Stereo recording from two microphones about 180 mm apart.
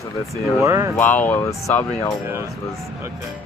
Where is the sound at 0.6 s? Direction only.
15° right (ahead or behind).